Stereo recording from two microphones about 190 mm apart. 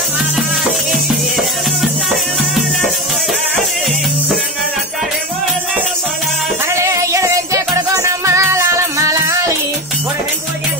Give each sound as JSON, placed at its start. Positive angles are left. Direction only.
{"t": 6.7, "sound": "music", "side_deg": -15}